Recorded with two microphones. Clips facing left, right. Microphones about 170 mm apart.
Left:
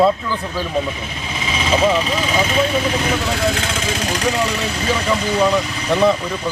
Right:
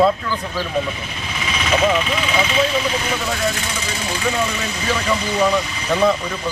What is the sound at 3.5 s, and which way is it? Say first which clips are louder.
Speech: left 4 dB; 85° left.